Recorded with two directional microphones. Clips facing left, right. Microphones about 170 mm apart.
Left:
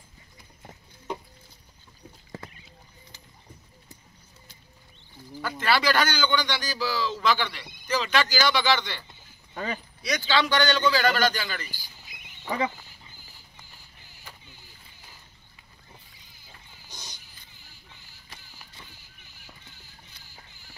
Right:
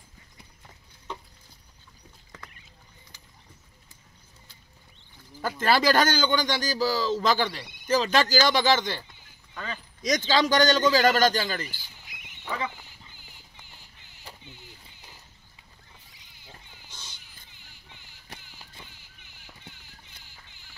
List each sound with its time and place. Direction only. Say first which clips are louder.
5.4 s a man's voice: right 2 dB; 45° right (ahead or behind)
10.0 s a man's voice: right 2 dB; 40° right (ahead or behind)
12.4 s speech: left 4 dB; 15° left (ahead or behind)
14.2 s rowboat: right 4 dB; 20° right (ahead or behind)